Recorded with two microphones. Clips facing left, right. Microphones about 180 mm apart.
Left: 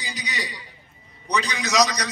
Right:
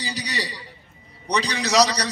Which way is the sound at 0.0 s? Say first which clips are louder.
Right 3 dB; 35° right (ahead or behind).